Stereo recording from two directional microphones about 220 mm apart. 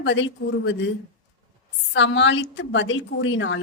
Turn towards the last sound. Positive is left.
turn(degrees=55)  # may be behind; listen again after turning